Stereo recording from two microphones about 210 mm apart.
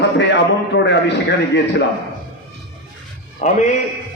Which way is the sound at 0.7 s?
60° left (ahead or behind).